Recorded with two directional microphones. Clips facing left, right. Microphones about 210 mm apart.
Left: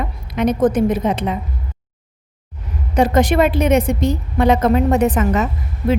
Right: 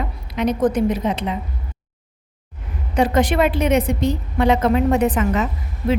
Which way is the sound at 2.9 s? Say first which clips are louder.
Left 3 dB; 45° left (ahead or behind).